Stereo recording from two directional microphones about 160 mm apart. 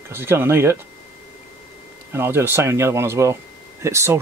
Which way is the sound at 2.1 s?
15° right (ahead or behind).